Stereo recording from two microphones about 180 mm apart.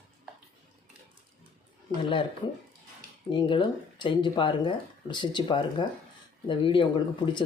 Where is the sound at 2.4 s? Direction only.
25° left (ahead or behind).